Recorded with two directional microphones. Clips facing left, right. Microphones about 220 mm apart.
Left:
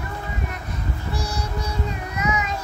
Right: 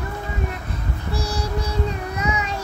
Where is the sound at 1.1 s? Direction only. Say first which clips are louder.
Right 5 dB; 30° right (ahead or behind).